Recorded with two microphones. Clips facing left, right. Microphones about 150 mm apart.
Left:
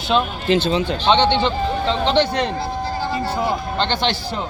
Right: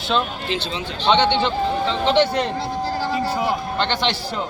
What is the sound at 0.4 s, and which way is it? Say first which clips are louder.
Speech: left 8 dB; 45° left (ahead or behind).